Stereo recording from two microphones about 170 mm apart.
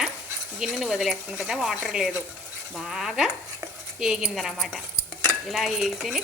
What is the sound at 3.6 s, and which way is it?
Stir, 15° right (ahead or behind).